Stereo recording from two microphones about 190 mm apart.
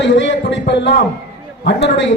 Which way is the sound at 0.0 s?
70° left (ahead or behind).